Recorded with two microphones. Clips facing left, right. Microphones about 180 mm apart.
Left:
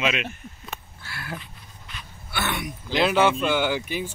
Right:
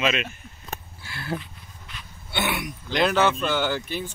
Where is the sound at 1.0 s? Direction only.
25° right (ahead or behind).